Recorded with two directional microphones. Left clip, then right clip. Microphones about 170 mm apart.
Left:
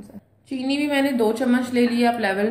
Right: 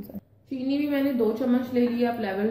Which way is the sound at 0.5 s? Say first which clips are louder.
Left 4 dB; 65° left (ahead or behind).